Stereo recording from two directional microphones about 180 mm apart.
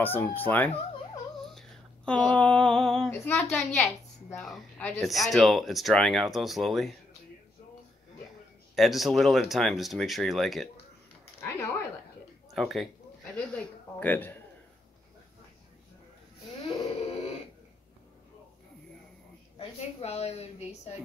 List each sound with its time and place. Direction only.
0.0 s speech: 10° left (ahead or behind)
1.5 s female singing: 5° left (ahead or behind)
8.7 s female singing: centre (ahead or behind)
11.4 s a sound: 15° left (ahead or behind)
12.5 s female singing: centre (ahead or behind)
13.4 s a woman's voice: 10° left (ahead or behind)
19.6 s a woman's voice: 35° left (ahead or behind)